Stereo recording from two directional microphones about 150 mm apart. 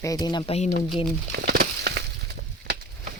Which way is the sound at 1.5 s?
90° right.